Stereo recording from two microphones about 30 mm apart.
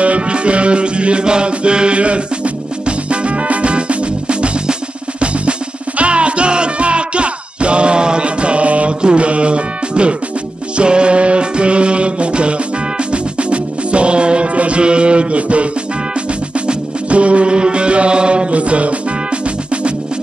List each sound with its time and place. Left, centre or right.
0.0 s music: right
18.5 s music: right